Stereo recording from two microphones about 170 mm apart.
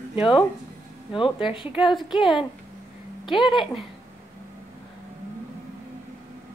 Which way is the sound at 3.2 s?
30° left (ahead or behind).